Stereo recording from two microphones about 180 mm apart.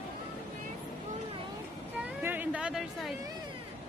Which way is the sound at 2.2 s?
10° right (ahead or behind).